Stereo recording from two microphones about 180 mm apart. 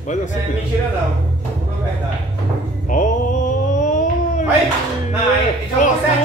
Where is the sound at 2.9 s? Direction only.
45° left (ahead or behind).